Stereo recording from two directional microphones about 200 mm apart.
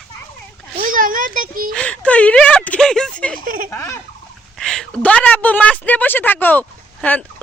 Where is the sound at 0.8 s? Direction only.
40° right (ahead or behind).